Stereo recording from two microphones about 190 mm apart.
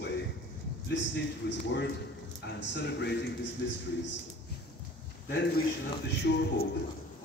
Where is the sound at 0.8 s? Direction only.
65° left (ahead or behind).